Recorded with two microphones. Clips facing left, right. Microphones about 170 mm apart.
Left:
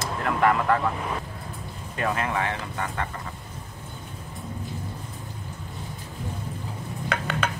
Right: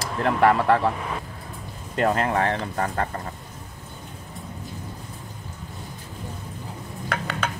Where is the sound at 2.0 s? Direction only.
40° right (ahead or behind).